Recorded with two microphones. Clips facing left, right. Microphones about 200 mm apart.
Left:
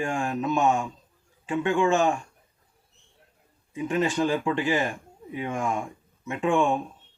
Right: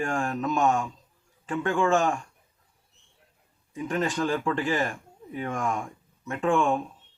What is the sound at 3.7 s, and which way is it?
Speech, 10° left (ahead or behind).